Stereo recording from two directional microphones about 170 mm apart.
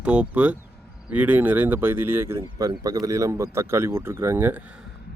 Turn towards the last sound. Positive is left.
turn(degrees=-10)  # may be behind; listen again after turning